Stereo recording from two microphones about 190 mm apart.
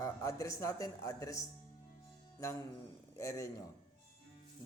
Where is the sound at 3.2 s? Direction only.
15° left (ahead or behind).